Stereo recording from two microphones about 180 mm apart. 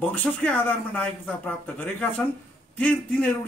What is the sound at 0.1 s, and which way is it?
Speech, 10° left (ahead or behind).